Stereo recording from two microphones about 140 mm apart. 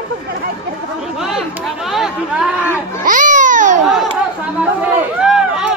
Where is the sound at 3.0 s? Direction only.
70° right (ahead or behind).